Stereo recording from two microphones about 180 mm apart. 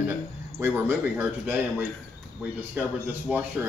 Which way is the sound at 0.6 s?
10° right (ahead or behind).